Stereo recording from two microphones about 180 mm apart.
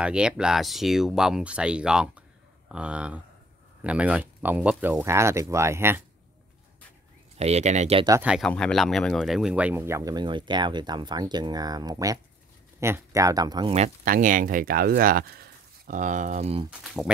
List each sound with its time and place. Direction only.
0.0 s speech: 5° right (ahead or behind)
7.3 s speech: 35° right (ahead or behind)
8.2 s speech: 5° right (ahead or behind)
8.5 s speech: 5° left (ahead or behind); by 13.7 s 25° right (ahead or behind)
14.0 s speech: 50° right (ahead or behind)